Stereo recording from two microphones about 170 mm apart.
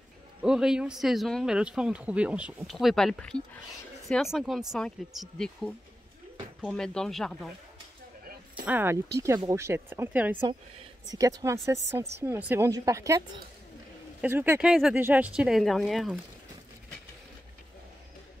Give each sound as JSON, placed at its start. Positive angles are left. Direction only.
{"t": 0.4, "sound": "speech", "side_deg": -5}
{"t": 8.6, "sound": "speech", "side_deg": -10}
{"t": 14.2, "sound": "speech", "side_deg": -10}